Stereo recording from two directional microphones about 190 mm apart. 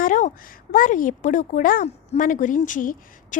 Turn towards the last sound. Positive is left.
turn(degrees=45)  # may be behind; listen again after turning